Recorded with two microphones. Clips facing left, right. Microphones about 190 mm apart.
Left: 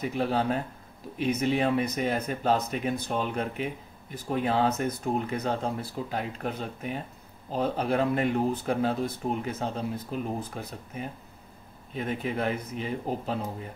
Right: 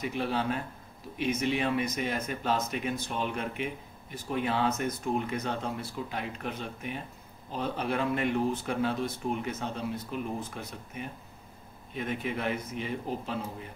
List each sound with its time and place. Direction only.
0.0 s speech: 40° left (ahead or behind)